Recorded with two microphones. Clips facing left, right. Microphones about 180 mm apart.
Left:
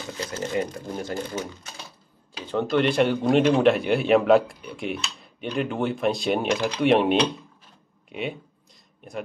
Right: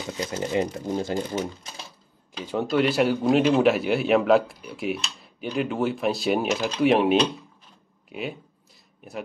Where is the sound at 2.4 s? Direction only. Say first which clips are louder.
Even; 10° right (ahead or behind).